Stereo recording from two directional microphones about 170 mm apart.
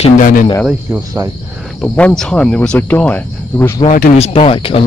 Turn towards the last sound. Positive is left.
turn(degrees=35)  # may be behind; listen again after turning